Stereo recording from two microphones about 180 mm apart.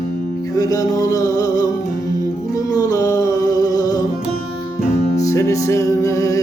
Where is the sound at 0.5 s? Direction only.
20° left (ahead or behind).